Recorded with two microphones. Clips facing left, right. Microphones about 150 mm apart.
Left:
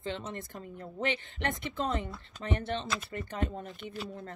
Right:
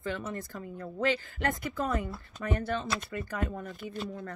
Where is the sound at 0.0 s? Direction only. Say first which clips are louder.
Right 2 dB; 25° left (ahead or behind).